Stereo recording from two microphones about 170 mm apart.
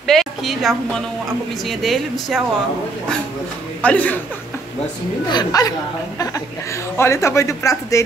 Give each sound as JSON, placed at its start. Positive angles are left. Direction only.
{"t": 0.0, "sound": "a woman's voice", "side_deg": 0}
{"t": 3.8, "sound": "speech", "side_deg": 10}
{"t": 5.3, "sound": "speech", "side_deg": 25}